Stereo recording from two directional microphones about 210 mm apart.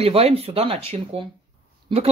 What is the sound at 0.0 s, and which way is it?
Speech, 30° right (ahead or behind).